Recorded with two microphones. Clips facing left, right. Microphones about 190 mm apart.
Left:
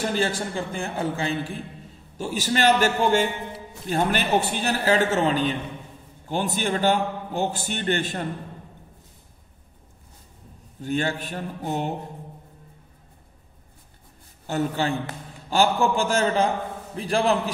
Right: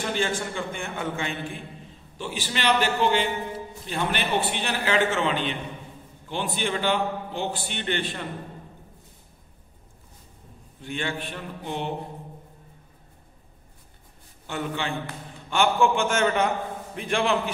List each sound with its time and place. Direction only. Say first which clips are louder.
0.0 s a man's voice: left 2 dB; 40° left (ahead or behind)
10.8 s a man's voice: left 5 dB; 40° left (ahead or behind)
14.4 s a man's voice: left 5 dB; 40° left (ahead or behind)